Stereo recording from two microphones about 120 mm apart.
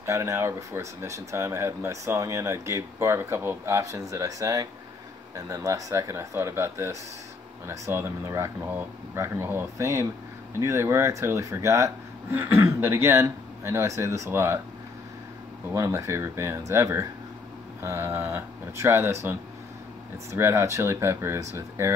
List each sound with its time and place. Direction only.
0.0 s speech: 25° right (ahead or behind)
15.7 s speech: 25° right (ahead or behind)
20.2 s speech: 20° right (ahead or behind)